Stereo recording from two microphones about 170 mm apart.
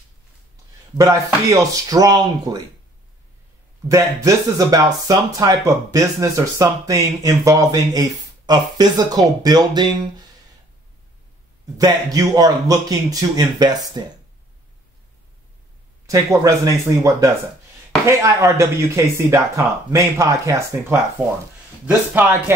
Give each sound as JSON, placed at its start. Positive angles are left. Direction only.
{"t": 0.9, "sound": "speech", "side_deg": -20}
{"t": 3.9, "sound": "speech", "side_deg": -20}
{"t": 11.8, "sound": "speech", "side_deg": -20}
{"t": 16.4, "sound": "speech", "side_deg": -15}